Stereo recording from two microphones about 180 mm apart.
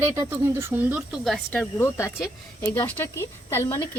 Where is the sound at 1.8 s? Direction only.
15° left (ahead or behind).